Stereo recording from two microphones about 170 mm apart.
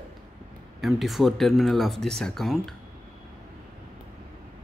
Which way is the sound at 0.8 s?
Centre (ahead or behind).